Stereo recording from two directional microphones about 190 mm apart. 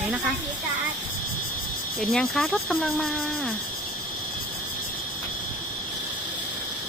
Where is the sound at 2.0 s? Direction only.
Centre (ahead or behind).